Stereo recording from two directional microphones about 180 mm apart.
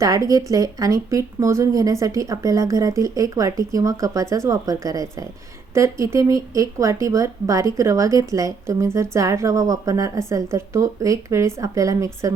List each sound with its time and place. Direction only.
0.0 s speech: 20° right (ahead or behind)